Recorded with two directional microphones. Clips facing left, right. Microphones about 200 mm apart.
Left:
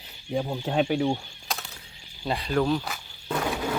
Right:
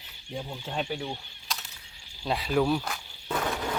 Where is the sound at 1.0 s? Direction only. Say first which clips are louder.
Left 11 dB; 50° left (ahead or behind).